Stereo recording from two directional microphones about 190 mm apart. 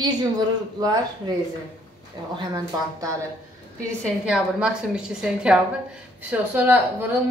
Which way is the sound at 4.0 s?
5° right (ahead or behind).